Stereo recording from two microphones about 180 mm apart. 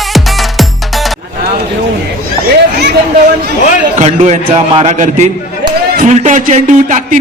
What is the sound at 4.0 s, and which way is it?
A man's voice, 40° right (ahead or behind).